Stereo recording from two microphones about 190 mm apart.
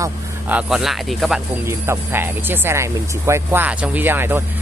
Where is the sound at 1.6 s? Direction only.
10° right (ahead or behind).